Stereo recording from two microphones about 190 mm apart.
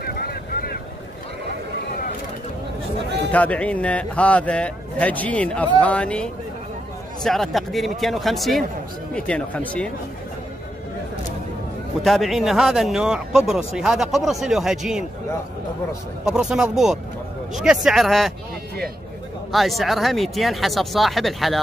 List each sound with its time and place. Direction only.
0.0 s boat: 55° left (ahead or behind)
3.3 s a man's voice: 5° left (ahead or behind)
12.0 s speech: centre (ahead or behind)
16.3 s speech: 5° right (ahead or behind)
19.5 s speech: centre (ahead or behind)